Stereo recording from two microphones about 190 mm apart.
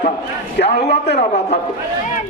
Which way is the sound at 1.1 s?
40° left (ahead or behind).